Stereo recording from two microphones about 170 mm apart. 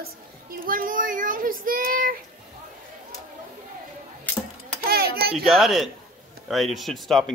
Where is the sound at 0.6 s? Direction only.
55° right (ahead or behind).